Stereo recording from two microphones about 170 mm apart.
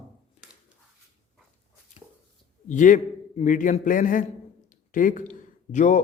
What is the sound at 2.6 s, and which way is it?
A man's voice, 50° left (ahead or behind).